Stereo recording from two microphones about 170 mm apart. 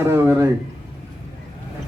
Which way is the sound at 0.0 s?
15° right (ahead or behind).